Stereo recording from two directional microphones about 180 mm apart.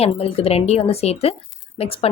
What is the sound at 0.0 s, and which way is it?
Speech, 30° left (ahead or behind).